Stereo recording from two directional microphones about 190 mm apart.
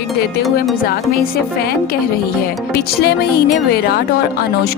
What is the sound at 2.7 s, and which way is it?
Music, 55° left (ahead or behind).